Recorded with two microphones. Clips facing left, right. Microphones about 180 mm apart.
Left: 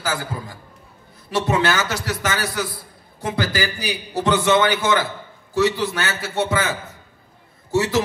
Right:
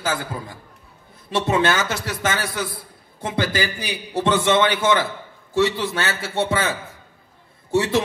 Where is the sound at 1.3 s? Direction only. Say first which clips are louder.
Even; 25° right (ahead or behind).